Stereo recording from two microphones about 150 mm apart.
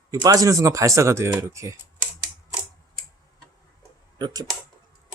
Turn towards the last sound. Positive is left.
turn(degrees=-25)  # may be behind; listen again after turning